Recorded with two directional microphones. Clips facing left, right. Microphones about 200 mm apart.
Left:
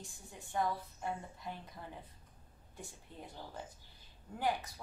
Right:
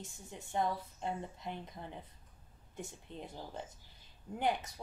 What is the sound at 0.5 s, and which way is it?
A woman's voice, 20° right (ahead or behind).